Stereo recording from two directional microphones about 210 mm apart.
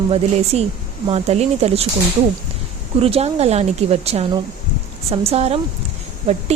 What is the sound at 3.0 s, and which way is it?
A woman's voice, 30° right (ahead or behind).